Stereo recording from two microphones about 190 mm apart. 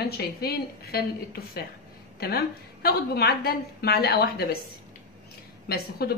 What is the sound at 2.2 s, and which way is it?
Speech, 55° left (ahead or behind).